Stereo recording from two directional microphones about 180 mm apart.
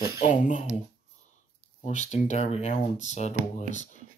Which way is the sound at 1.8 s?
40° left (ahead or behind).